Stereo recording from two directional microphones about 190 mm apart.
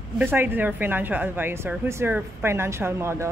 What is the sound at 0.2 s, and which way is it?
A woman's voice, 10° right (ahead or behind).